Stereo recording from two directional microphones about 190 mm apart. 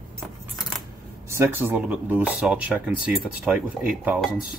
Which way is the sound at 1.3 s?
15° right (ahead or behind).